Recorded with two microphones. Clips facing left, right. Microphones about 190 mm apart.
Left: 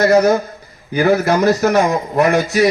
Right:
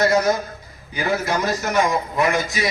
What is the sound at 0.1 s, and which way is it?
A man's voice, 65° left (ahead or behind).